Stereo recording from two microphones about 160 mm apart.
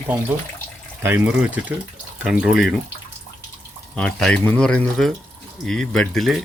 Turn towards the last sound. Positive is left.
turn(degrees=0)  # may be behind; listen again after turning